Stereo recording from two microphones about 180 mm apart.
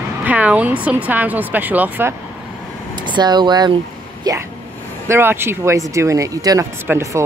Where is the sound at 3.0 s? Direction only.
25° right (ahead or behind).